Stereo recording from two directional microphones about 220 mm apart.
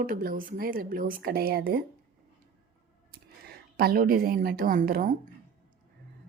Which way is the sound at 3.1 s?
45° right (ahead or behind).